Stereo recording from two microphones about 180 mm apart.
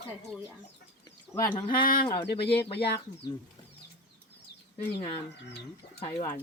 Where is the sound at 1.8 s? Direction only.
55° left (ahead or behind).